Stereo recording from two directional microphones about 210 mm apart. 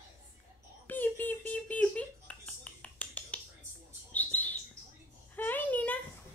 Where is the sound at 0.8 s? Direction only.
10° left (ahead or behind).